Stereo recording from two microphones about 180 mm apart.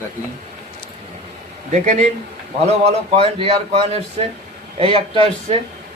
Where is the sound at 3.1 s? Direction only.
30° right (ahead or behind).